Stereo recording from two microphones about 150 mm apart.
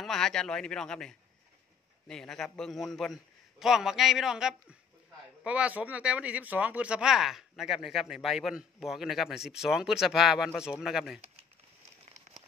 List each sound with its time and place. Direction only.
0.0 s speech: 5° left (ahead or behind)